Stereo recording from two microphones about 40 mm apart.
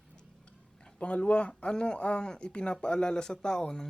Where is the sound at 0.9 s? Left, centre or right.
Left.